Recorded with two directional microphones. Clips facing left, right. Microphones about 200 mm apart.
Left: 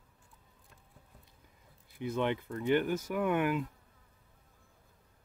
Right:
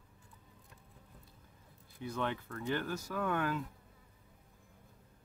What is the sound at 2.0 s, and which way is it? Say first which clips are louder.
Speech: left 5 dB; 20° left (ahead or behind).